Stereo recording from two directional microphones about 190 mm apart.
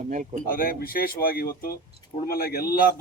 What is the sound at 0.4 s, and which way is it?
Speech, 50° left (ahead or behind).